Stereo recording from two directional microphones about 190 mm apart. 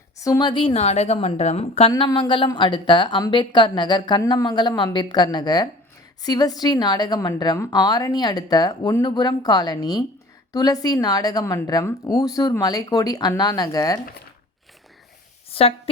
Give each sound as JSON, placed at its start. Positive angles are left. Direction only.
{"t": 0.2, "sound": "a woman's voice", "side_deg": 20}
{"t": 1.9, "sound": "a woman's voice", "side_deg": 20}
{"t": 15.4, "sound": "a sound", "side_deg": 30}